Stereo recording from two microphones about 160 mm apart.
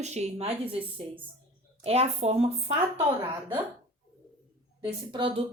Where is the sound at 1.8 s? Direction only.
40° right (ahead or behind).